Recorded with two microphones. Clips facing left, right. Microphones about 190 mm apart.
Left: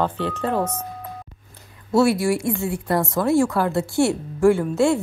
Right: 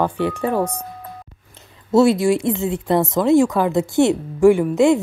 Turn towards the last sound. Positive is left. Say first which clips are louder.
# right 4 dB
turn(degrees=-15)  # may be behind; listen again after turning